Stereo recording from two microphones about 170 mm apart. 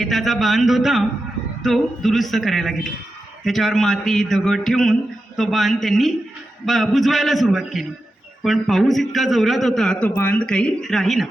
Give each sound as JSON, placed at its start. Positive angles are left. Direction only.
{"t": 0.0, "sound": "a man's voice", "side_deg": 0}